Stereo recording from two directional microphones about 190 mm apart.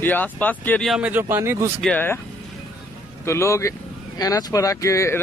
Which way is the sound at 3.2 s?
15° left (ahead or behind).